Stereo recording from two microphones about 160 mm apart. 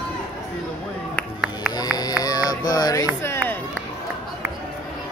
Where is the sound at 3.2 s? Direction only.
15° left (ahead or behind).